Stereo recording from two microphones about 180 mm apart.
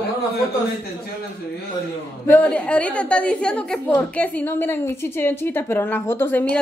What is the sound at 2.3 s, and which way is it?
A woman's voice, 5° left (ahead or behind).